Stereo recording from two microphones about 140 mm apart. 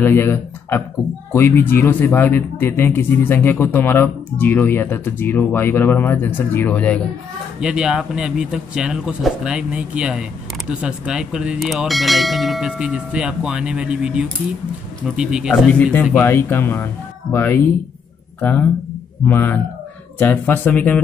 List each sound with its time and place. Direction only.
0.0 s a man's voice: 15° left (ahead or behind)
7.6 s speech: 5° right (ahead or behind)
15.9 s a man's voice: 10° left (ahead or behind)